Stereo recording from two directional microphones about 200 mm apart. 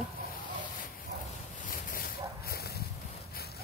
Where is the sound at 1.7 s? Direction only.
45° left (ahead or behind).